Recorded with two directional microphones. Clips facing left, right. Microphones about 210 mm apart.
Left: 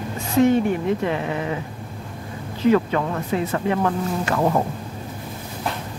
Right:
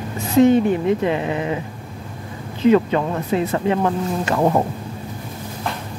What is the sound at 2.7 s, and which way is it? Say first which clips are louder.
Speech: right 3 dB; 25° right (ahead or behind).